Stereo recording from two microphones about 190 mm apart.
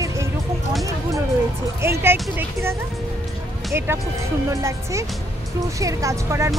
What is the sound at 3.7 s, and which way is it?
Speech, 10° right (ahead or behind).